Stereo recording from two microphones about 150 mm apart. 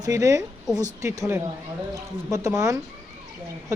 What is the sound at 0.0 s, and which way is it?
A woman's voice, 20° right (ahead or behind).